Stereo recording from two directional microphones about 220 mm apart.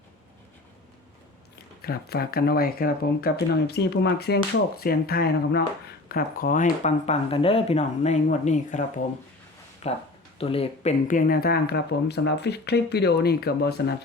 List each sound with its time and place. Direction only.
1.8 s speech: 45° left (ahead or behind)
9.8 s speech: 30° left (ahead or behind); by 13.9 s 50° left (ahead or behind)